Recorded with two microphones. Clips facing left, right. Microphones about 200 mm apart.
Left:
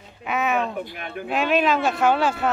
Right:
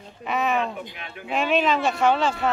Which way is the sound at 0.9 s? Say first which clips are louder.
Left 6 dB; 50° left (ahead or behind).